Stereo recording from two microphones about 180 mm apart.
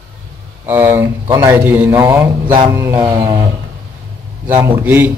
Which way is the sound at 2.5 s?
20° right (ahead or behind).